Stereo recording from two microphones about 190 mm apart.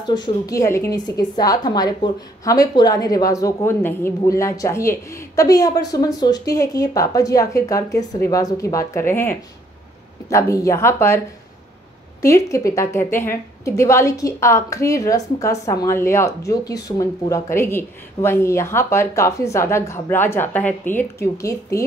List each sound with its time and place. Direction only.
0.0 s a woman's voice: 20° left (ahead or behind)
12.2 s a woman's voice: 15° left (ahead or behind)